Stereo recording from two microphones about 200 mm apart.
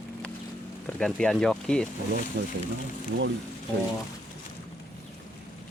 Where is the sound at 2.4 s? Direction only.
50° right (ahead or behind).